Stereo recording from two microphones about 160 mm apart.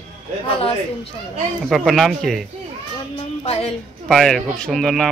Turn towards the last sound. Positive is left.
turn(degrees=0)  # may be behind; listen again after turning